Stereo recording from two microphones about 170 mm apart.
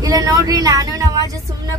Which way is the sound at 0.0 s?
20° right (ahead or behind).